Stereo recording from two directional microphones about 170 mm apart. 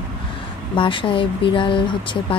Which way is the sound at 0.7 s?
30° left (ahead or behind).